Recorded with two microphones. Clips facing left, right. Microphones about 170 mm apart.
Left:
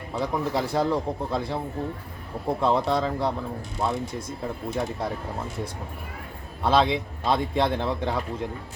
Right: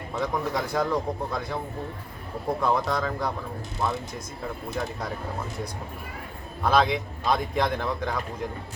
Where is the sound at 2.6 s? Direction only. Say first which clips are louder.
Left 3 dB; 25° left (ahead or behind).